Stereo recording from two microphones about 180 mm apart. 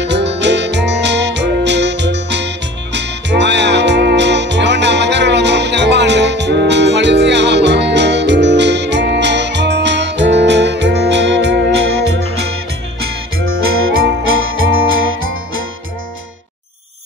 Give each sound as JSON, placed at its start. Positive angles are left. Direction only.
{"t": 0.0, "sound": "music", "side_deg": -75}
{"t": 13.5, "sound": "music", "side_deg": -90}